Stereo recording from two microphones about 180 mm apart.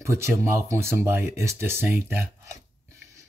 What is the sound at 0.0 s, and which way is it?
Speech, 15° right (ahead or behind).